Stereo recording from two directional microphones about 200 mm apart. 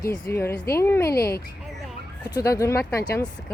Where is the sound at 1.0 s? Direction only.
50° left (ahead or behind).